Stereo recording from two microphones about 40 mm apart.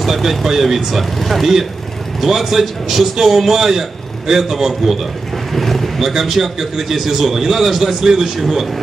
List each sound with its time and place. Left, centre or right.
0.0 s a man's voice: centre
5.5 s vehicle: centre
6.0 s a man's voice: centre